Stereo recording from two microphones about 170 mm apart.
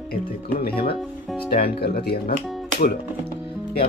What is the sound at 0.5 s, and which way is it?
Speech, 65° left (ahead or behind).